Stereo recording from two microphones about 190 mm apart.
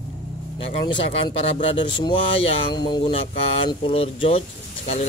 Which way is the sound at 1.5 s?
30° left (ahead or behind).